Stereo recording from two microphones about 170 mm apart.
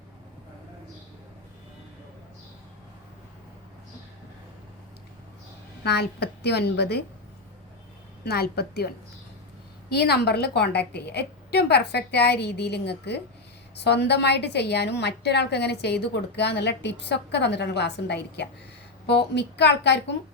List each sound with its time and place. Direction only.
5.8 s a woman's voice: 75° left (ahead or behind)
8.2 s a woman's voice: 70° left (ahead or behind); by 20.1 s 90° left